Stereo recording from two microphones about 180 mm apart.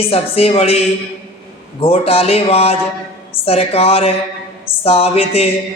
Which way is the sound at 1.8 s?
35° left (ahead or behind).